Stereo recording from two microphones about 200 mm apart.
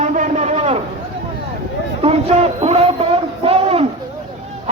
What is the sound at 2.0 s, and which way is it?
Speech, 30° right (ahead or behind).